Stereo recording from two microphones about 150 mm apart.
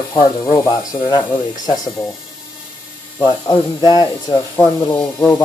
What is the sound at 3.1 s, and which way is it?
Speech, 25° left (ahead or behind).